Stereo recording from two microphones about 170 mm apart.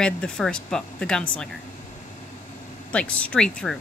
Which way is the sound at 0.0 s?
5° left (ahead or behind).